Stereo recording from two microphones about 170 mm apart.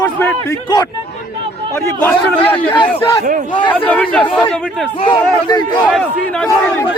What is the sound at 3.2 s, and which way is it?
Speech, 50° right (ahead or behind).